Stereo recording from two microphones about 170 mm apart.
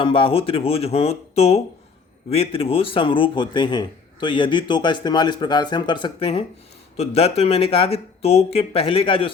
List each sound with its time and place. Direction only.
0.0 s a man's voice: 30° left (ahead or behind)